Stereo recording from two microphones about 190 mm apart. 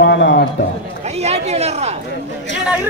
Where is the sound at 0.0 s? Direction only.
70° left (ahead or behind).